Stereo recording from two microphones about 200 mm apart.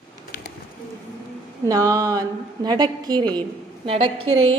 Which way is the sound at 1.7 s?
15° right (ahead or behind).